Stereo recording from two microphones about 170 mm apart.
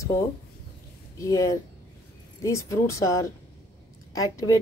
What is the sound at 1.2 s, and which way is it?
Speech, 20° left (ahead or behind).